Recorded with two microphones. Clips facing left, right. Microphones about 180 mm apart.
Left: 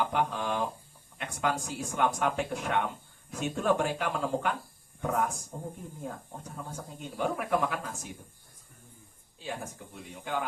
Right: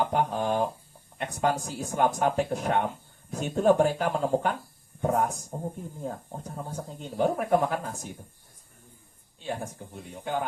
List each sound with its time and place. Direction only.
0.0 s speech: 35° right (ahead or behind)
9.9 s speech: 40° right (ahead or behind)